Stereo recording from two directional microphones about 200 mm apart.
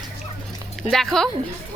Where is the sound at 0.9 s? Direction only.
Centre (ahead or behind).